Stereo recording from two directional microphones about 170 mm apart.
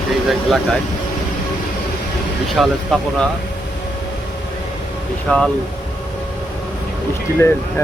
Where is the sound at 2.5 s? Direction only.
Centre (ahead or behind).